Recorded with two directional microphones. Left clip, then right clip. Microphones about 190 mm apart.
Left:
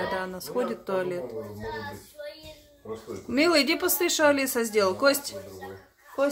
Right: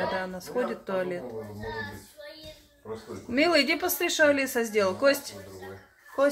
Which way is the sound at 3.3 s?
10° left (ahead or behind).